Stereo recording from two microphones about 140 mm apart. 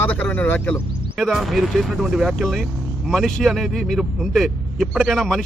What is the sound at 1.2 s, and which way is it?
Speech, centre (ahead or behind).